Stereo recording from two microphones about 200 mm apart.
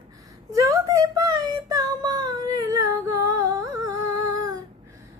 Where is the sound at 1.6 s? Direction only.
20° right (ahead or behind).